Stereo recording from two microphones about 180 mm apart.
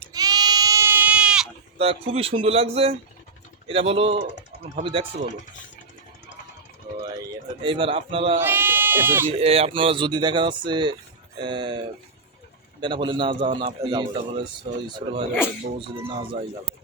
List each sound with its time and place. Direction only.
0.1 s goat: 20° right (ahead or behind); by 1.5 s 5° right (ahead or behind)
1.8 s speech: 30° right (ahead or behind)
7.6 s speech: 30° right (ahead or behind)
8.4 s speech: 10° right (ahead or behind)
9.4 s speech: 35° right (ahead or behind)